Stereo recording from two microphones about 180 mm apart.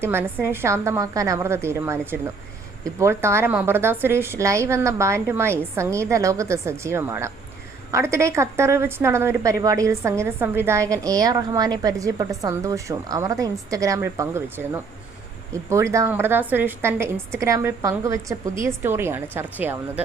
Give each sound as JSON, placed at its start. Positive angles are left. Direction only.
{"t": 0.0, "sound": "a woman's voice", "side_deg": -15}